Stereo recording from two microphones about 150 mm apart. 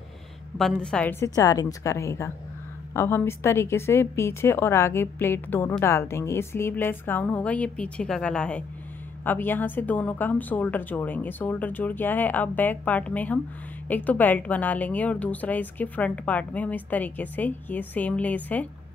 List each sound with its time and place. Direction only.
0.6 s a woman's voice: 5° left (ahead or behind)
1.2 s a woman's voice: 25° left (ahead or behind)